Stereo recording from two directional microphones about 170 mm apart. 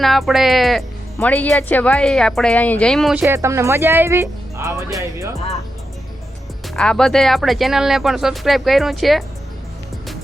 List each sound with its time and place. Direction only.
0.0 s speech: centre (ahead or behind)
3.2 s speech: 15° right (ahead or behind)
6.7 s speech: 5° left (ahead or behind)